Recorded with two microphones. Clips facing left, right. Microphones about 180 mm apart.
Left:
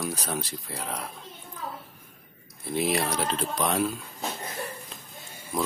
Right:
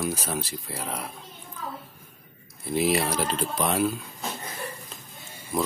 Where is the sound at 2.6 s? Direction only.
Centre (ahead or behind).